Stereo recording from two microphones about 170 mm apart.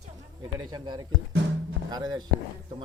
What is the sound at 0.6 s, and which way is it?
A man's voice, 25° right (ahead or behind).